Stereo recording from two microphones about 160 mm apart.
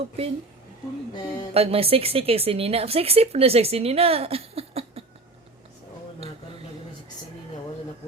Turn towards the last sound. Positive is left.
turn(degrees=-40)  # may be behind; listen again after turning